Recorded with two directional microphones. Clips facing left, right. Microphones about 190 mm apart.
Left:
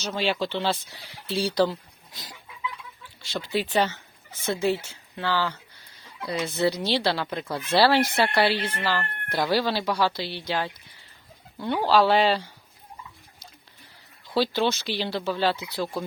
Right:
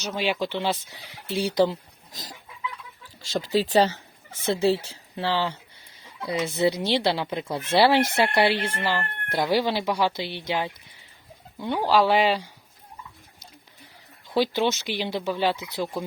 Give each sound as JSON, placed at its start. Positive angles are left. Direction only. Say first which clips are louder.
{"t": 0.1, "sound": "speech", "louder": "even", "side_deg": -10}
{"t": 3.2, "sound": "speech", "louder": "right 4 dB", "side_deg": -40}
{"t": 14.3, "sound": "speech", "louder": "right 1 dB", "side_deg": -15}